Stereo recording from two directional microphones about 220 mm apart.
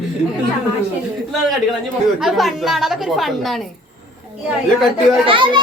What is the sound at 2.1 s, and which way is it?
A woman's voice, centre (ahead or behind).